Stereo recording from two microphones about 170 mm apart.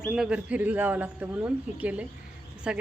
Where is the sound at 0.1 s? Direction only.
5° right (ahead or behind).